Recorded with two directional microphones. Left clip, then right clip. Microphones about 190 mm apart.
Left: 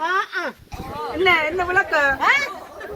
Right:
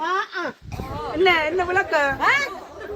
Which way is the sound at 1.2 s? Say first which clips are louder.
Left 1 dB; 50° left (ahead or behind).